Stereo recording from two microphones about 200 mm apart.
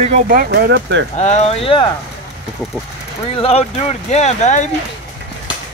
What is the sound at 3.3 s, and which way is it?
Speech, 30° left (ahead or behind).